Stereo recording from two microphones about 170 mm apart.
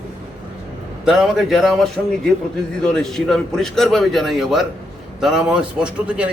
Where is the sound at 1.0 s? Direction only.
Centre (ahead or behind).